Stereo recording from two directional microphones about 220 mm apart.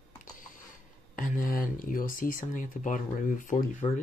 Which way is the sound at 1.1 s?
40° left (ahead or behind).